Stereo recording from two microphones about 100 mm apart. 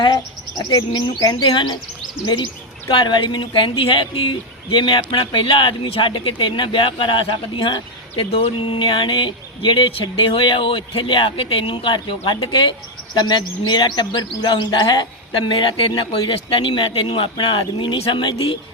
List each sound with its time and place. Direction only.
0.7 s speech: 45° left (ahead or behind); by 18.2 s 70° left (ahead or behind)
18.2 s speech: 50° left (ahead or behind)